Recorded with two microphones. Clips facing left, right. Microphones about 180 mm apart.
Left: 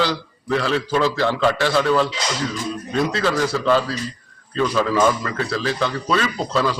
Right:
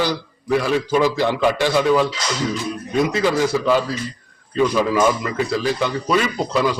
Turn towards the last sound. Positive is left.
turn(degrees=-15)  # may be behind; listen again after turning